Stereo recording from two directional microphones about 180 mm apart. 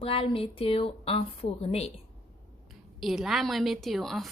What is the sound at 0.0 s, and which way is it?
A woman's voice, 30° left (ahead or behind).